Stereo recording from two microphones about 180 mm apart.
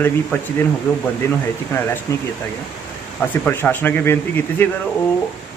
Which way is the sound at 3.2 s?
10° left (ahead or behind).